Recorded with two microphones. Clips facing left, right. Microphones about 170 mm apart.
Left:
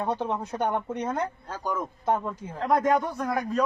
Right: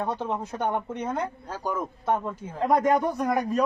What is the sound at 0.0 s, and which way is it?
Speech, 15° left (ahead or behind).